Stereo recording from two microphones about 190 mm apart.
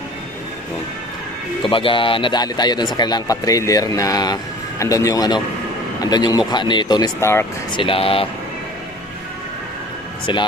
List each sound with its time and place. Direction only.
1.6 s speech: 25° left (ahead or behind)
7.7 s speech: 30° left (ahead or behind)